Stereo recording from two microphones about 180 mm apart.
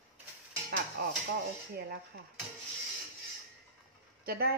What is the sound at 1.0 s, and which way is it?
Speech, 60° right (ahead or behind).